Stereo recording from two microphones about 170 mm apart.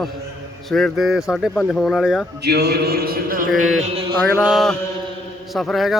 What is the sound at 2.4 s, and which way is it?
Speech, 75° right (ahead or behind).